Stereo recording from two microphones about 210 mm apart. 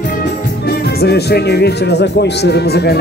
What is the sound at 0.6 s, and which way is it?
Speech, 50° left (ahead or behind).